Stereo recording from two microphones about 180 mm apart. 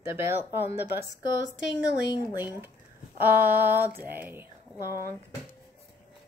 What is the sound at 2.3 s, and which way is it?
Speech, 10° right (ahead or behind).